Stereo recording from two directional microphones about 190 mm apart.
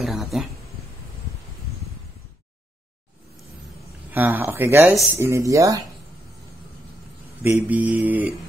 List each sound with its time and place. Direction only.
0.0 s a sound: centre (ahead or behind)
4.1 s speech: 10° right (ahead or behind)
7.4 s speech: 10° right (ahead or behind)